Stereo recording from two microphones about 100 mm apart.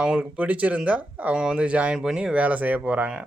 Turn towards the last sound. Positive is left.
turn(degrees=-15)  # may be behind; listen again after turning